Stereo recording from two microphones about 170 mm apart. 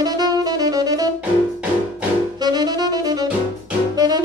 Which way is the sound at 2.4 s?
25° right (ahead or behind).